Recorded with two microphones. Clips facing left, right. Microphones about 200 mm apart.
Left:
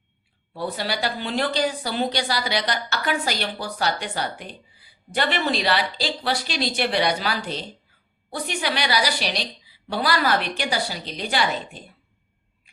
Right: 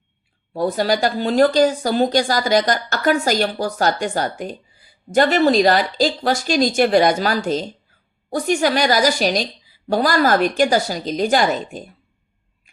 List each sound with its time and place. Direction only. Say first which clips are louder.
0.5 s a woman's voice: right 9 dB; 45° right (ahead or behind)